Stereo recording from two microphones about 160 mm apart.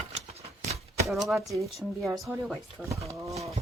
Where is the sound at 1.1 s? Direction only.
Centre (ahead or behind).